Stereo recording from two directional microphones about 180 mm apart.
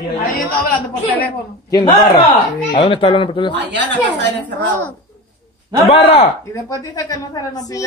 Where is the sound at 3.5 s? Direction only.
75° right (ahead or behind).